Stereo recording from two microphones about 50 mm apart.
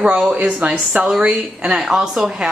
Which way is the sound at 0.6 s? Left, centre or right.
Right.